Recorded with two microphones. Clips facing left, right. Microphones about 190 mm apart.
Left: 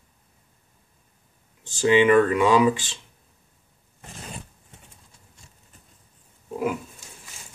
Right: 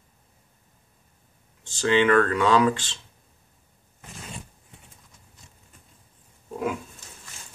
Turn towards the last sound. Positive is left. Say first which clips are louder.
# left 2 dB
turn(degrees=5)  # may be behind; listen again after turning